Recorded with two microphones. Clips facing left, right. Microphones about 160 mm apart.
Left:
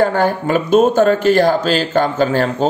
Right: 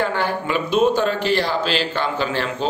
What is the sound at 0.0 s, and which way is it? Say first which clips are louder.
A man's voice: left 7 dB; 45° left (ahead or behind).